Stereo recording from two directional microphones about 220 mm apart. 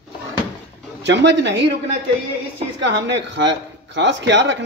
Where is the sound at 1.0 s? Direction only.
55° right (ahead or behind).